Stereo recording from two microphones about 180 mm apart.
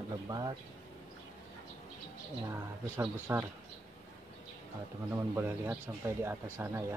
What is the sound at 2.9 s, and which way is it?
Speech, 10° right (ahead or behind).